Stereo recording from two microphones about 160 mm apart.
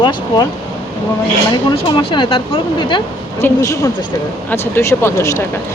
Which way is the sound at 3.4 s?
20° left (ahead or behind).